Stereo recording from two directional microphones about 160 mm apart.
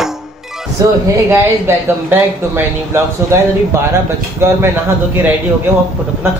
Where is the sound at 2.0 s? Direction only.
15° right (ahead or behind).